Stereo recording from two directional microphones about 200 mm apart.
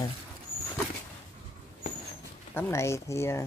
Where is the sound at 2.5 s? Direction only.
15° left (ahead or behind).